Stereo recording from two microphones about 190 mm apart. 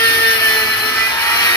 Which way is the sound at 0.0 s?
15° left (ahead or behind).